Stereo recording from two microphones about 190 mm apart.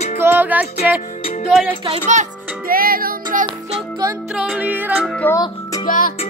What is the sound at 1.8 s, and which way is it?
Speech, 35° right (ahead or behind).